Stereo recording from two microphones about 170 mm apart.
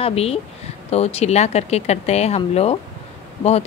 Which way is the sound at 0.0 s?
35° left (ahead or behind).